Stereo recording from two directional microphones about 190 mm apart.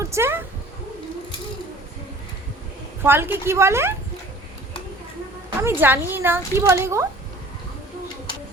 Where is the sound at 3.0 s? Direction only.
10° right (ahead or behind).